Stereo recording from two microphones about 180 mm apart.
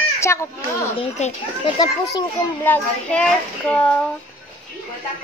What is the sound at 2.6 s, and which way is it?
A child's voice, 10° left (ahead or behind).